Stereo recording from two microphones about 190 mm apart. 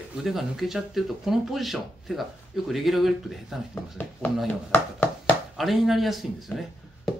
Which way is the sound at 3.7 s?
10° left (ahead or behind).